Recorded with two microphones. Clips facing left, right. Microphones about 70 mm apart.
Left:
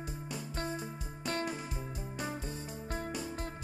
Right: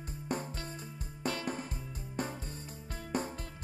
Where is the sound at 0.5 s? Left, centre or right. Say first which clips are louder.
Left 6 dB; left.